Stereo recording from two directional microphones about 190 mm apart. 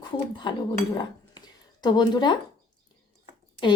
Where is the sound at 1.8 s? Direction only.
20° left (ahead or behind).